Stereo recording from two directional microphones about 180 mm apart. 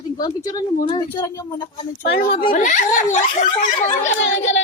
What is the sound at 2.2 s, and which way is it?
Speech, 30° left (ahead or behind).